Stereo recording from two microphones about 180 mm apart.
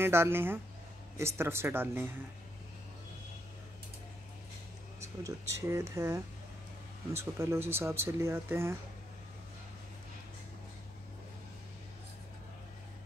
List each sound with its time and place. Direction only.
0.0 s speech: 15° right (ahead or behind)
5.0 s speech: 15° right (ahead or behind)